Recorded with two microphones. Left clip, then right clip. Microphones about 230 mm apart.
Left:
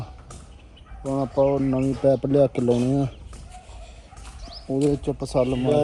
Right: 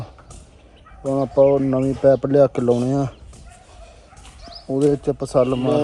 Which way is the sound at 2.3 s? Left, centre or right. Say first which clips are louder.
Right 4 dB; centre.